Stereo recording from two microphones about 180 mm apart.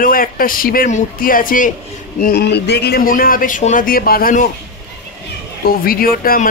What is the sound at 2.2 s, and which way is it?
Speech, 60° left (ahead or behind).